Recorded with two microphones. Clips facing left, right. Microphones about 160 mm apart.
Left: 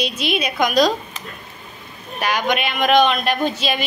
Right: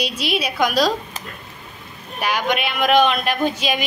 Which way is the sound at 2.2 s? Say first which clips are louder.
Left 1 dB; 10° right (ahead or behind).